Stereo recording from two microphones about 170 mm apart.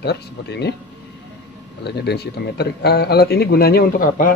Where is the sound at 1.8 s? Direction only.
75° left (ahead or behind).